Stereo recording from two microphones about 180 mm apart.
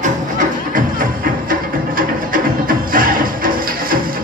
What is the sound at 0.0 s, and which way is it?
Music, 45° right (ahead or behind).